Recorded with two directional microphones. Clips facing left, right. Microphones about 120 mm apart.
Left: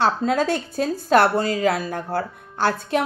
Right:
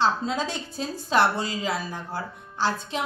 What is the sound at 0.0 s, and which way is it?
A woman's voice, 55° left (ahead or behind).